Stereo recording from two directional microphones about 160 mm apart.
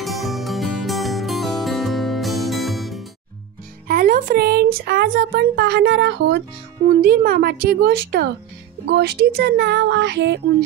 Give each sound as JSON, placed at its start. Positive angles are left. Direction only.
{"t": 0.0, "sound": "music", "side_deg": 0}
{"t": 3.8, "sound": "speech", "side_deg": -60}
{"t": 6.9, "sound": "speech", "side_deg": -65}
{"t": 8.8, "sound": "speech", "side_deg": -90}